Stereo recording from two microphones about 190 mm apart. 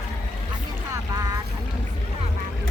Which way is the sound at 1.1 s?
20° right (ahead or behind).